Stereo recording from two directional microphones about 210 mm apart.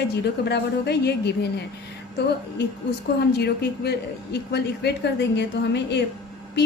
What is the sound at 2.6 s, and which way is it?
A woman's voice, 55° left (ahead or behind).